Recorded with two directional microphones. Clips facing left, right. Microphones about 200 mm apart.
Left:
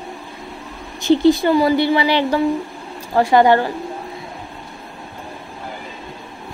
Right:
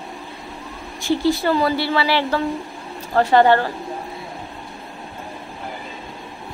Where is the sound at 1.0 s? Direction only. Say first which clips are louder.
Left 6 dB; 20° left (ahead or behind).